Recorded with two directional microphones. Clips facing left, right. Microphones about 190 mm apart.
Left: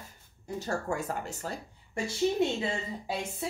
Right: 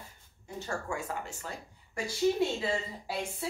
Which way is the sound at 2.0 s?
25° left (ahead or behind).